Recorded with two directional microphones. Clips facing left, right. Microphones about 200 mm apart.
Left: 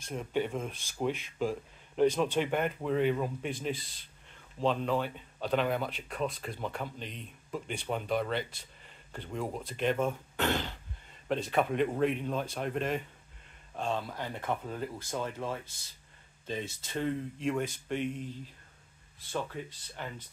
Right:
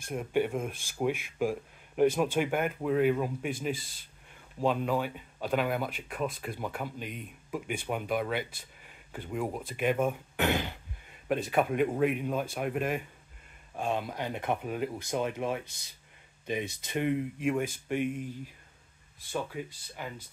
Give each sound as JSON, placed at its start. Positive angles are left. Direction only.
{"t": 0.0, "sound": "speech", "side_deg": -10}
{"t": 3.7, "sound": "speech", "side_deg": -45}
{"t": 4.3, "sound": "speech", "side_deg": -10}